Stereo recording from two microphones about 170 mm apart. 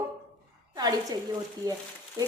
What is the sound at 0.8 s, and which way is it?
Speech, 25° right (ahead or behind).